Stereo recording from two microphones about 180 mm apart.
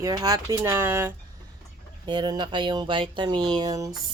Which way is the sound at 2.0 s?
25° right (ahead or behind).